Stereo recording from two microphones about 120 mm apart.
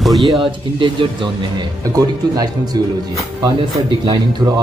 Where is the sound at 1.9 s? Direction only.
30° right (ahead or behind).